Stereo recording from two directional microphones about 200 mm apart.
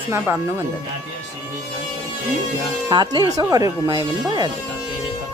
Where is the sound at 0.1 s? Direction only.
10° right (ahead or behind).